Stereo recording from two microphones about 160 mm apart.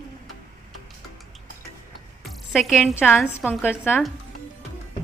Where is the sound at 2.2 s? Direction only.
Centre (ahead or behind).